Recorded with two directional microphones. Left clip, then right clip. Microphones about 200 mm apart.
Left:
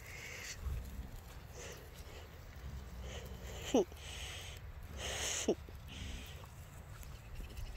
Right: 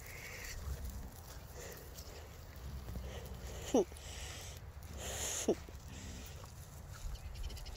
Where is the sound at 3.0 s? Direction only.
5° left (ahead or behind).